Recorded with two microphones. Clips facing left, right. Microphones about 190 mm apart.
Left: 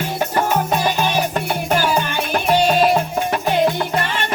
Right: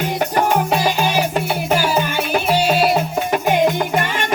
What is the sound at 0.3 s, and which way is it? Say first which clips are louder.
Music: right 1 dB; 10° right (ahead or behind).